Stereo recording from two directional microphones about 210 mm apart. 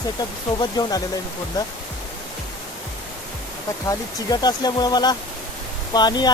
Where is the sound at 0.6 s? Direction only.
20° left (ahead or behind).